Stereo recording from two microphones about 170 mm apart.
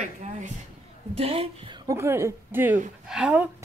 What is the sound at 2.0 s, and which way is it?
A woman's voice, 15° right (ahead or behind).